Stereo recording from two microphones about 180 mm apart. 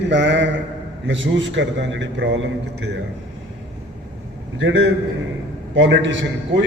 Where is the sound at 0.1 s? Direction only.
80° right.